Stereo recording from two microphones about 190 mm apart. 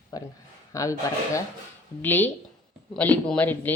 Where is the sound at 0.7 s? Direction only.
15° left (ahead or behind).